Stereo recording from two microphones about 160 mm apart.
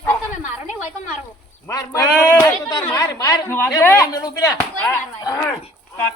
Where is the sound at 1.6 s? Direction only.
20° left (ahead or behind).